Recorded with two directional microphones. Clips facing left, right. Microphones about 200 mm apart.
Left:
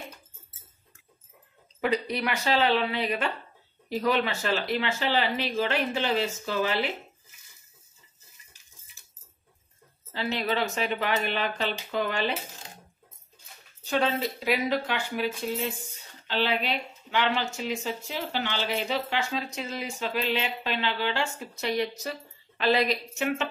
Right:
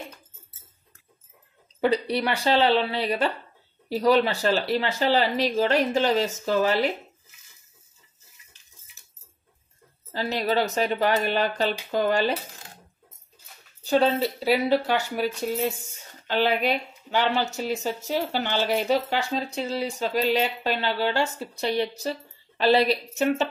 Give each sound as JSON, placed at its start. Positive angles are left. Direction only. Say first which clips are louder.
{"t": 1.8, "sound": "speech", "louder": "right 4 dB", "side_deg": -35}
{"t": 10.1, "sound": "speech", "louder": "right 4 dB", "side_deg": -40}
{"t": 13.8, "sound": "speech", "louder": "right 5 dB", "side_deg": -35}